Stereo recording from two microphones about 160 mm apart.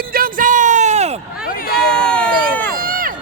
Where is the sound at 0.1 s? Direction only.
60° right (ahead or behind); by 1.1 s 45° right (ahead or behind).